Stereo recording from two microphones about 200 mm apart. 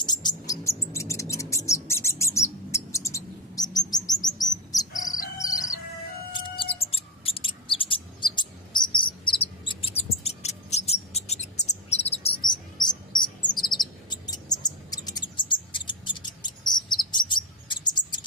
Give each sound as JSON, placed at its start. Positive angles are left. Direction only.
{"t": 0.0, "sound": "bird", "side_deg": 20}
{"t": 5.4, "sound": "chicken", "side_deg": 15}
{"t": 6.3, "sound": "a sound", "side_deg": 25}
{"t": 12.8, "sound": "cricket", "side_deg": 20}